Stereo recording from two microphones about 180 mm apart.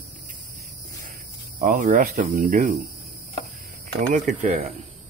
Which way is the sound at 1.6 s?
45° right (ahead or behind).